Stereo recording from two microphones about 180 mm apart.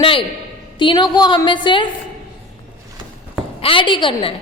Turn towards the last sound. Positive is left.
turn(degrees=30)  # may be behind; listen again after turning